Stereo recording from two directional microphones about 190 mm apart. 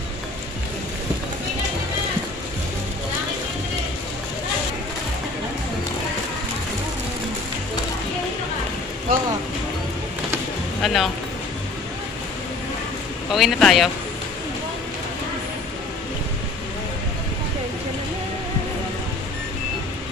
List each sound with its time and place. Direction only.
9.1 s vehicle: 50° right (ahead or behind)
10.8 s music: centre (ahead or behind)
13.3 s speech: centre (ahead or behind)